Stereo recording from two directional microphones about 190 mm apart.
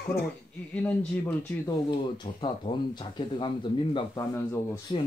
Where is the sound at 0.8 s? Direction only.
10° left (ahead or behind).